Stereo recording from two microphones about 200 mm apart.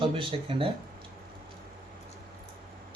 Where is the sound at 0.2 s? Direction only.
25° right (ahead or behind).